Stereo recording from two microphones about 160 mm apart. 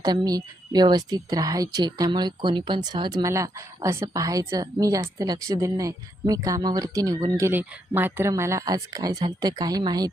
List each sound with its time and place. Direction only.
0.0 s speech: 25° right (ahead or behind)